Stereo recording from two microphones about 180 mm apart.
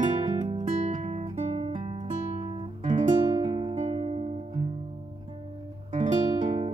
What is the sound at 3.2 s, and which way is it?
Music, 30° right (ahead or behind).